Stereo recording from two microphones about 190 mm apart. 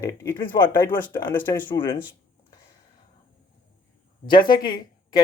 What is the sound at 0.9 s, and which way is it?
Speech, 25° left (ahead or behind).